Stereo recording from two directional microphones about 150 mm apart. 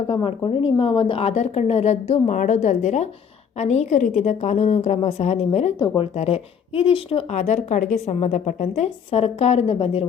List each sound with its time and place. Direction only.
0.1 s speech: 35° left (ahead or behind)